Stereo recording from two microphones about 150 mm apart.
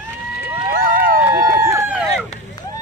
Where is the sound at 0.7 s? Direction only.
70° right (ahead or behind).